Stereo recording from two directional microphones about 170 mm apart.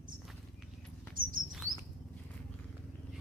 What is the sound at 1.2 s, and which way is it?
Rodents, 55° right (ahead or behind).